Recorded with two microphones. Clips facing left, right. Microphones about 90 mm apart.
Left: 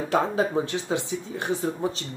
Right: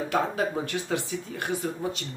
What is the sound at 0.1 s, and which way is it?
Speech, 25° left (ahead or behind).